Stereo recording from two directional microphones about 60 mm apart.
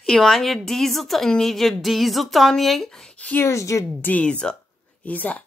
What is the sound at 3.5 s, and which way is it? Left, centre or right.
Speech, left.